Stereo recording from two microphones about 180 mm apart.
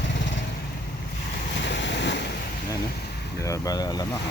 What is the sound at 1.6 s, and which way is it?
Waves, 80° left.